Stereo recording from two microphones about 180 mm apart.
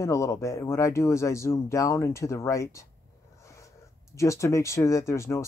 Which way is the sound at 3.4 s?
15° left (ahead or behind).